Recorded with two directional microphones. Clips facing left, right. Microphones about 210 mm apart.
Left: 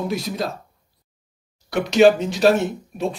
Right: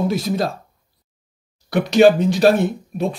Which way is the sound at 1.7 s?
55° right (ahead or behind).